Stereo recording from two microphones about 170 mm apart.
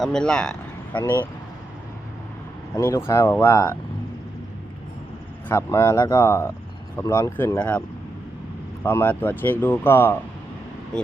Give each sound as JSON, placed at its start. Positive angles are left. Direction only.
{"t": 0.0, "sound": "a man's voice", "side_deg": 5}
{"t": 2.7, "sound": "speech", "side_deg": 20}
{"t": 5.5, "sound": "speech", "side_deg": 15}
{"t": 8.8, "sound": "speech", "side_deg": 10}